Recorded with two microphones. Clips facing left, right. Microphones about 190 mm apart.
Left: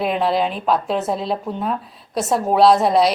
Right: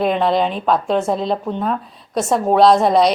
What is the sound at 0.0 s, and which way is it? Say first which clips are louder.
A woman's voice: right 3 dB; 5° left (ahead or behind).